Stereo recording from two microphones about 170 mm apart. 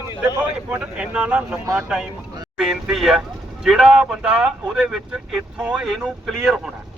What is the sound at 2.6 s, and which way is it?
Speech, 5° right (ahead or behind).